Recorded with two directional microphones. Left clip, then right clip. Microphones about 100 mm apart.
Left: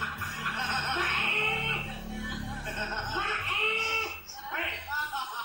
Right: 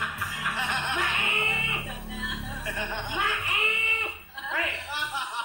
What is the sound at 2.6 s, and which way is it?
Music, 30° right (ahead or behind).